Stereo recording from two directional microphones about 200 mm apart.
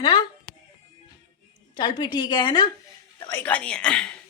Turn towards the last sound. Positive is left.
turn(degrees=5)  # may be behind; listen again after turning